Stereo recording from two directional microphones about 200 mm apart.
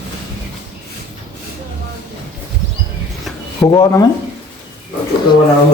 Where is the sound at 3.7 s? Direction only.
15° left (ahead or behind).